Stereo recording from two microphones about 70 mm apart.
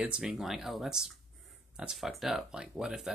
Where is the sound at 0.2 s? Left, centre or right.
Centre.